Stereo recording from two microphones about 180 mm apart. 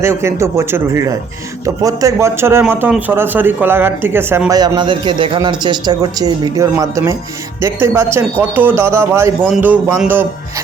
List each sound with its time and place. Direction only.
0.0 s speech: 15° right (ahead or behind)